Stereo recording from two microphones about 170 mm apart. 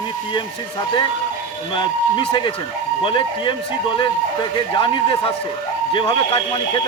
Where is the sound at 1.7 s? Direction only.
30° left (ahead or behind).